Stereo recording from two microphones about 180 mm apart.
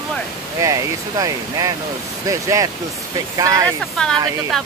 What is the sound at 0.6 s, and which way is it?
Speech, 20° right (ahead or behind).